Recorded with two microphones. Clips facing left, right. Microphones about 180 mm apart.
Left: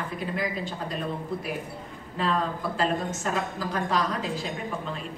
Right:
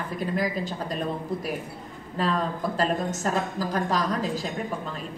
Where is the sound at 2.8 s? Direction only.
40° right (ahead or behind).